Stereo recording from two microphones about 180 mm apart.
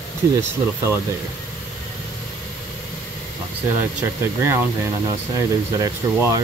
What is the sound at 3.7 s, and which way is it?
Speech, 15° right (ahead or behind).